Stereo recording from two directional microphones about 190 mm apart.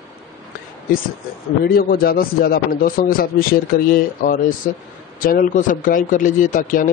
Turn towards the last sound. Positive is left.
turn(degrees=45)  # may be behind; listen again after turning